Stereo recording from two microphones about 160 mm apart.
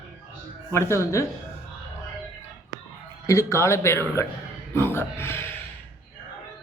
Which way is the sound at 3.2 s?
15° left (ahead or behind).